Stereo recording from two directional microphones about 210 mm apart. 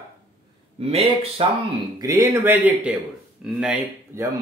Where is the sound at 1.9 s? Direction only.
15° right (ahead or behind).